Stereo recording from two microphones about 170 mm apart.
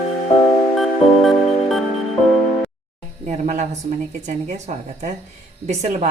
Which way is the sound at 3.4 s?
40° right (ahead or behind).